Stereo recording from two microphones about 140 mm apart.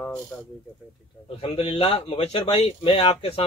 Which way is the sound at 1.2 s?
40° left (ahead or behind).